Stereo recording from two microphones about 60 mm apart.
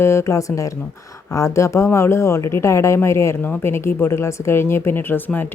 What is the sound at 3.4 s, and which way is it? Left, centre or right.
Speech, left.